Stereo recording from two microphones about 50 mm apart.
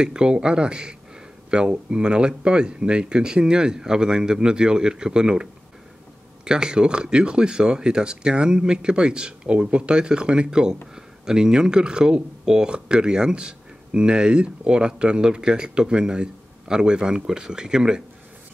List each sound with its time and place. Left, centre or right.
0.0 s speech: centre